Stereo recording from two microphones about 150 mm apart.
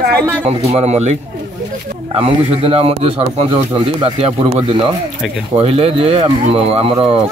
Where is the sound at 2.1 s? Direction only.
40° right (ahead or behind).